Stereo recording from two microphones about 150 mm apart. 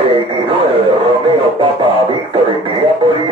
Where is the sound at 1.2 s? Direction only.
35° right (ahead or behind).